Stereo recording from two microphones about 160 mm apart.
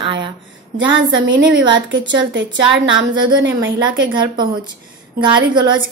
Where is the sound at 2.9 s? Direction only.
30° right (ahead or behind).